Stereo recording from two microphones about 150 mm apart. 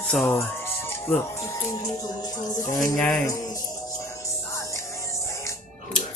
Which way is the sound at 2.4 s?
20° left (ahead or behind).